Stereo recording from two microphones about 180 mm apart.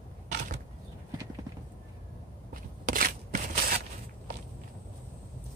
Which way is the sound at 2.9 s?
50° right (ahead or behind).